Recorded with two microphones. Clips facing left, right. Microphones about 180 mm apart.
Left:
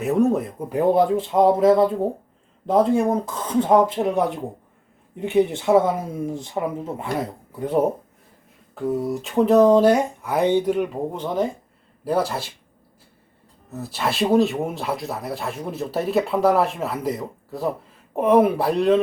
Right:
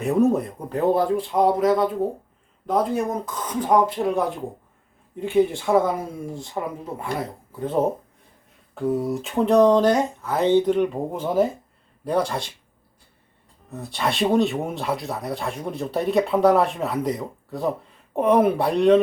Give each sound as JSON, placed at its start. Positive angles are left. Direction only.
{"t": 0.0, "sound": "speech", "side_deg": 0}
{"t": 0.7, "sound": "speech", "side_deg": 15}
{"t": 8.7, "sound": "speech", "side_deg": 0}
{"t": 11.1, "sound": "speech", "side_deg": -5}
{"t": 12.0, "sound": "speech", "side_deg": 5}
{"t": 13.7, "sound": "speech", "side_deg": 5}